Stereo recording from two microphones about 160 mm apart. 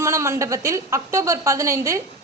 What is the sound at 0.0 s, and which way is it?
A woman's voice, 20° right (ahead or behind).